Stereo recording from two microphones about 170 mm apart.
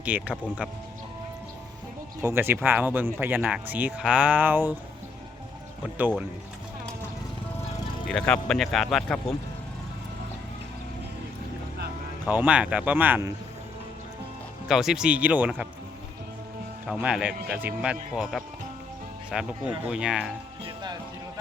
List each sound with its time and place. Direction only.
0.0 s speech: 10° right (ahead or behind)
2.2 s speech: 15° right (ahead or behind)
6.0 s speech: 10° right (ahead or behind)
8.0 s speech: 5° left (ahead or behind)
12.3 s speech: 10° right (ahead or behind)
14.7 s speech: centre (ahead or behind)
16.8 s speech: 5° right (ahead or behind)
20.7 s music: 25° right (ahead or behind)